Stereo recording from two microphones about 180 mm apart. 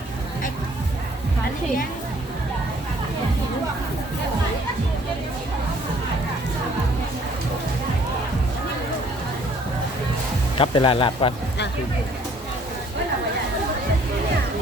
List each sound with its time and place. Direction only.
10.6 s a man's voice: 30° left (ahead or behind)